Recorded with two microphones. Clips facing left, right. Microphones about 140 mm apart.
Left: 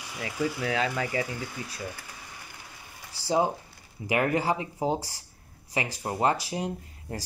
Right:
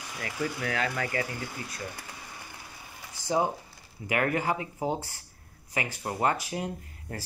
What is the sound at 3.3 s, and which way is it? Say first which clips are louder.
Speech: left 2 dB; 30° left (ahead or behind).